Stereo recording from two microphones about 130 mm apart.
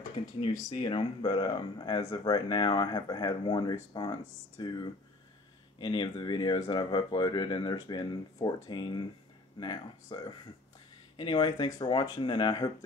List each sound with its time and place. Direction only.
0.2 s speech: 40° left (ahead or behind)
5.8 s speech: 35° left (ahead or behind)
11.1 s speech: 35° left (ahead or behind)